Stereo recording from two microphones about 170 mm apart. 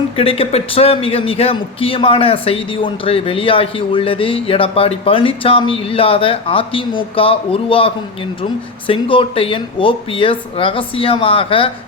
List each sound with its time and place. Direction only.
0.2 s a man's voice: 35° left (ahead or behind)